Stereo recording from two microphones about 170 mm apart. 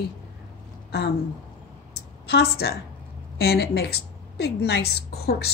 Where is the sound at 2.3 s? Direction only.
70° left (ahead or behind).